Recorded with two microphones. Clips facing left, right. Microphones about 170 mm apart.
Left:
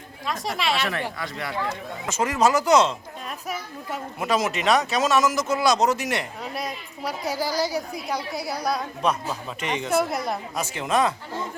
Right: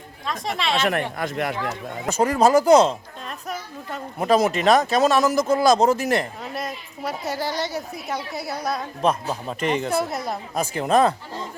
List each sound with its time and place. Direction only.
0.3 s a woman's voice: centre (ahead or behind)
0.8 s speech: 50° right (ahead or behind)
2.0 s speech: 35° right (ahead or behind)
4.2 s speech: 35° right (ahead or behind)
5.5 s speech: 50° right (ahead or behind)
5.8 s speech: 35° right (ahead or behind)
6.4 s a woman's voice: centre (ahead or behind)
9.0 s speech: 35° right (ahead or behind)
9.9 s a woman's voice: centre (ahead or behind)
10.8 s speech: 35° right (ahead or behind)